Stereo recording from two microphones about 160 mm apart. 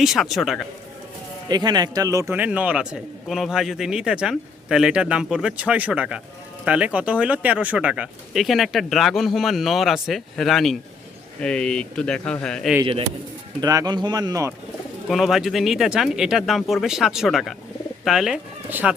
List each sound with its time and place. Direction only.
0.0 s speech: centre (ahead or behind)
1.5 s speech: 25° right (ahead or behind)
2.3 s speech: 10° right (ahead or behind)
12.8 s speech: 35° right (ahead or behind)
13.6 s speech: 25° right (ahead or behind)
15.1 s speech: centre (ahead or behind)